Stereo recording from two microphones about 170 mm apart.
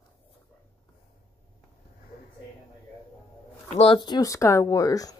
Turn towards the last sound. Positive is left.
turn(degrees=20)  # may be behind; listen again after turning